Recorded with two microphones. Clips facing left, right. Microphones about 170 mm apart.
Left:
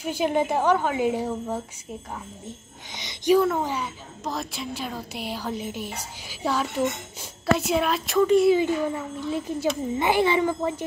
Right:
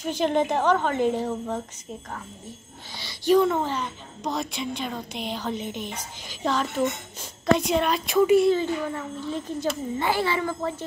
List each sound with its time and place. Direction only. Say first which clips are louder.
0.0 s a woman's voice: even; 10° left (ahead or behind)
2.9 s speech: left 1 dB; 20° left (ahead or behind)
3.3 s a woman's voice: right 1 dB; 5° left (ahead or behind)
8.5 s a woman's voice: left 3 dB; 10° left (ahead or behind)